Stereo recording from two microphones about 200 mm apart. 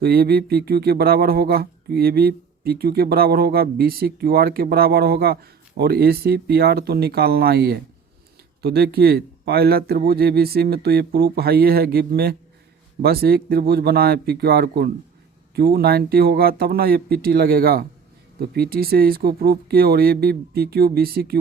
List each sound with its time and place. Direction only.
0.0 s speech: 50° right (ahead or behind)